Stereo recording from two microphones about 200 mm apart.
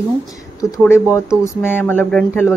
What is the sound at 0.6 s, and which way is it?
Speech, 15° left (ahead or behind).